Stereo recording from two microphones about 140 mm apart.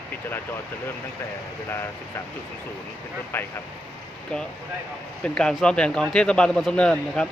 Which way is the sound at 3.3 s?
15° left (ahead or behind).